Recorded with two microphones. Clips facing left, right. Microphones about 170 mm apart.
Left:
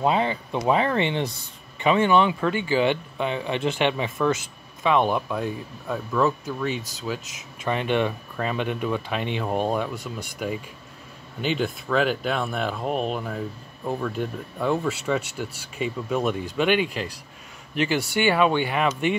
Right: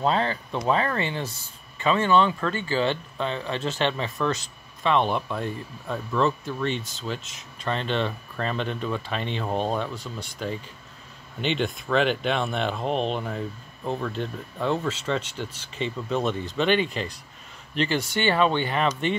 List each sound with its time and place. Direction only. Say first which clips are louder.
0.0 s speech: left 2 dB; 15° left (ahead or behind)